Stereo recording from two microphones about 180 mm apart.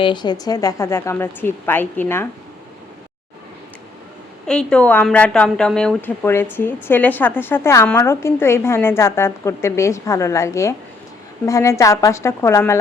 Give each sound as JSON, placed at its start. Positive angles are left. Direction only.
{"t": 0.0, "sound": "a woman's voice", "side_deg": 25}
{"t": 4.4, "sound": "a woman's voice", "side_deg": 5}